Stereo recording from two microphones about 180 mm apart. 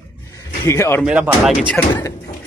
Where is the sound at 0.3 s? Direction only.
15° left (ahead or behind).